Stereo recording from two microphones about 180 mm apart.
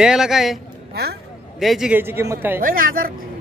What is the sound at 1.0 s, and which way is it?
Speech, 60° right (ahead or behind).